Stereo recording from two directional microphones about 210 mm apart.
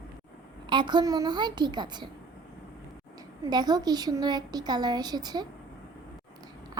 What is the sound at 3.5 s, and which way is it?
A woman's voice, 20° right (ahead or behind).